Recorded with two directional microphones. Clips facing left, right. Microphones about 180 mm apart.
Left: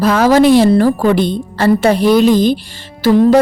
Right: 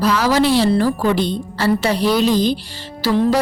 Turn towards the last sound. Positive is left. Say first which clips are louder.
# left 7 dB
turn(degrees=50)  # may be behind; listen again after turning